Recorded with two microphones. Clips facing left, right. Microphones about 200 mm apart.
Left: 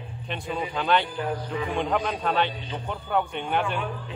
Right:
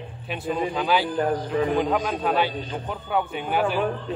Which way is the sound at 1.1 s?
45° right (ahead or behind).